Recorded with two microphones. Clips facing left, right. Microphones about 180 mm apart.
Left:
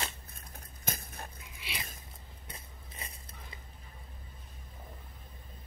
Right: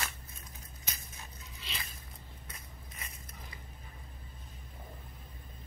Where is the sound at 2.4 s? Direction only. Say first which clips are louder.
Left 1 dB; 30° left (ahead or behind).